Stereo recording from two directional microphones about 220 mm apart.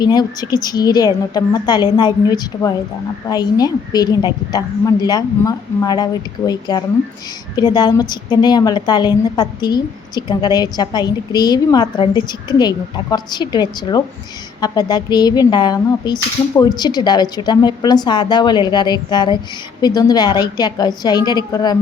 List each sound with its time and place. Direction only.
0.0 s a woman's voice: 20° left (ahead or behind)